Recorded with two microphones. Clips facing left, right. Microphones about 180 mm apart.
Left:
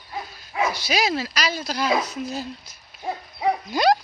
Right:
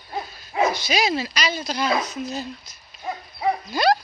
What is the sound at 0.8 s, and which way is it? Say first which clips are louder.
Speech: right 1 dB; 5° left (ahead or behind).